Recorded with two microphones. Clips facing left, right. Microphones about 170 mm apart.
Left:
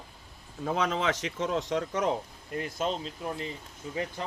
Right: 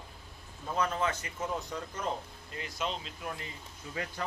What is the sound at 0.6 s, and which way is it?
Speech, 90° left.